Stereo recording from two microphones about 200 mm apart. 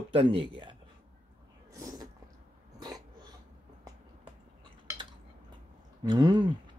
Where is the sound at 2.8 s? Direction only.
20° right (ahead or behind).